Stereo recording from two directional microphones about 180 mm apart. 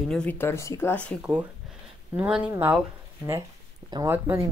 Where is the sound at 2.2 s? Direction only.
10° right (ahead or behind).